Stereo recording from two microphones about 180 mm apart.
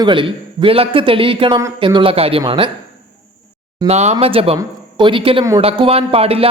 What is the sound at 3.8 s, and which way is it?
A man's voice, 35° right (ahead or behind).